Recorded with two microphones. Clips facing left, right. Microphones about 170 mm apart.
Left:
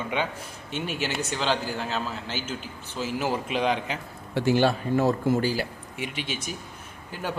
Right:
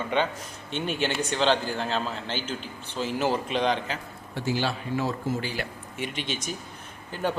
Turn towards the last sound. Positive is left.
turn(degrees=10)  # may be behind; listen again after turning